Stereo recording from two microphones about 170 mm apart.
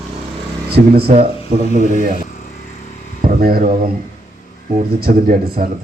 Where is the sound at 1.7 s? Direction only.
55° right (ahead or behind).